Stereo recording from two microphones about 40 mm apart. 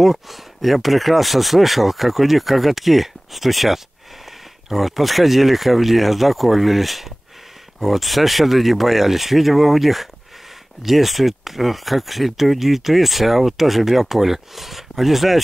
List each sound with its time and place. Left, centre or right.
0.0 s speech: centre